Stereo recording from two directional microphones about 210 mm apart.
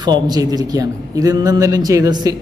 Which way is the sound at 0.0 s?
20° right (ahead or behind).